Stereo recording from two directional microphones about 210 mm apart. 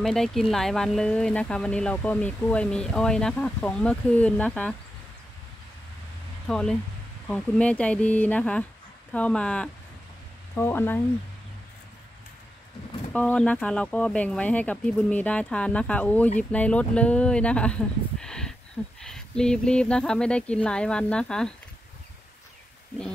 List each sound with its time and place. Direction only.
0.0 s speech: centre (ahead or behind)
6.4 s speech: 5° left (ahead or behind)
13.1 s speech: 5° left (ahead or behind)